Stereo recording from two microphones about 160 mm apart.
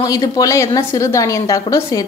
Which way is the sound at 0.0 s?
20° left (ahead or behind).